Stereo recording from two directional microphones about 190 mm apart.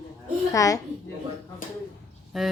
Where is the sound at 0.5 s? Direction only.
15° left (ahead or behind).